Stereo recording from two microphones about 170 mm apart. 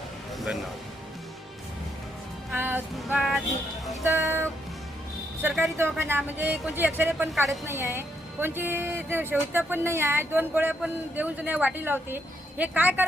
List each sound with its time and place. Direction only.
2.5 s music: 10° right (ahead or behind)
4.0 s speech: 15° right (ahead or behind)
5.7 s speech: 15° right (ahead or behind)